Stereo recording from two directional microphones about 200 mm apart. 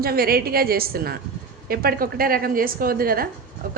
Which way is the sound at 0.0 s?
50° right (ahead or behind).